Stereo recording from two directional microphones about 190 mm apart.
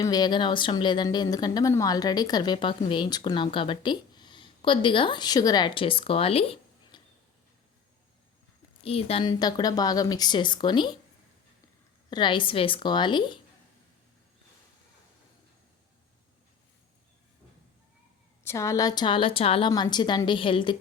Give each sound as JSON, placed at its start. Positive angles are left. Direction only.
{"t": 0.0, "sound": "speech", "side_deg": 20}
{"t": 8.8, "sound": "speech", "side_deg": 30}
{"t": 12.1, "sound": "speech", "side_deg": 25}
{"t": 18.4, "sound": "speech", "side_deg": 15}